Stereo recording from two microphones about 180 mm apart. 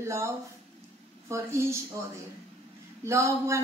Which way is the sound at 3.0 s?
15° right (ahead or behind).